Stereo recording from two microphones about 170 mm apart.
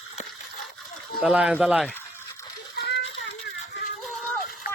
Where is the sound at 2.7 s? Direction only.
90° left.